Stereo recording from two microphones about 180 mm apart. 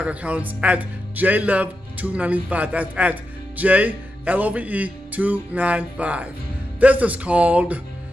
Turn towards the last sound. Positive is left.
turn(degrees=-10)  # may be behind; listen again after turning